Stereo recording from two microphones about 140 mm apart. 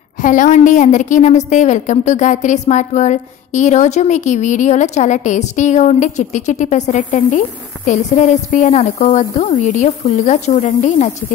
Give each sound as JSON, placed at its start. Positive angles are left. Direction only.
{"t": 0.2, "sound": "a woman's voice", "side_deg": 65}